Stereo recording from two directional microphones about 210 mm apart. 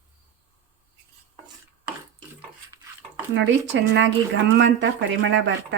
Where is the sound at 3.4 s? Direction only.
60° right (ahead or behind).